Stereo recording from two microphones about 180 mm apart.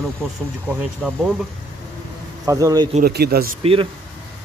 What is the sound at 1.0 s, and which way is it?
Speech, 5° left (ahead or behind).